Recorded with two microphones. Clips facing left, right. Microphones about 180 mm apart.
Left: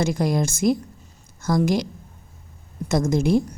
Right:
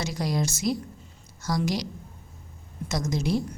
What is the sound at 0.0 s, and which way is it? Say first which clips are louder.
A woman's voice: left 6 dB; 50° left (ahead or behind).